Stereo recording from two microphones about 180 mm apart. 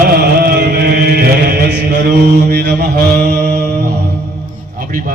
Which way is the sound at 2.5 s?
65° right (ahead or behind).